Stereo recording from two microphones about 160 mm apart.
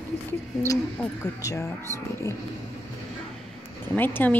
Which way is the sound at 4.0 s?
10° left (ahead or behind).